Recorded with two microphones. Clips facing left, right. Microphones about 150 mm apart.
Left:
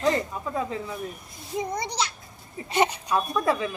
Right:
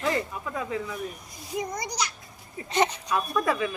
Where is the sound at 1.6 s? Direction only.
25° left (ahead or behind).